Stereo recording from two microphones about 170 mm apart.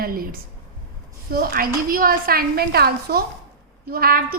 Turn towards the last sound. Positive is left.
turn(degrees=-60)  # may be behind; listen again after turning